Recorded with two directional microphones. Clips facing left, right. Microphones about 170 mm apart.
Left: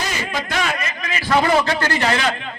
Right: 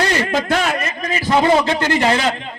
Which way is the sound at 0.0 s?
70° right (ahead or behind).